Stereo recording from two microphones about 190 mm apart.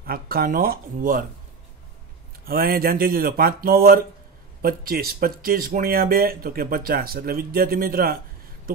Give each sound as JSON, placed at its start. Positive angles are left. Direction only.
{"t": 0.0, "sound": "speech", "side_deg": -50}
{"t": 2.4, "sound": "speech", "side_deg": -50}